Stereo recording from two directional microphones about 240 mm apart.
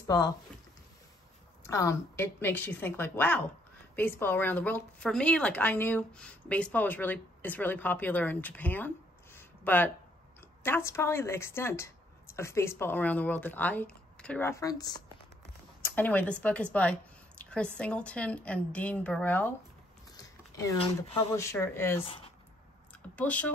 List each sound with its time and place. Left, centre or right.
0.0 s speech: centre
1.7 s a woman's voice: centre
20.2 s a sound: centre
21.3 s a woman's voice: centre
23.1 s a woman's voice: centre